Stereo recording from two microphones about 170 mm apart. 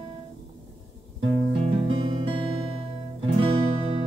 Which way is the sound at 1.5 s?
30° right (ahead or behind).